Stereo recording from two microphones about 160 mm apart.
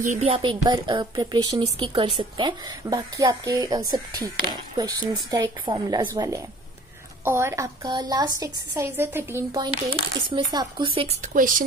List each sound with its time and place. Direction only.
0.0 s speech: 50° right (ahead or behind)
0.3 s a woman's voice: 30° right (ahead or behind)
11.3 s speech: 60° right (ahead or behind)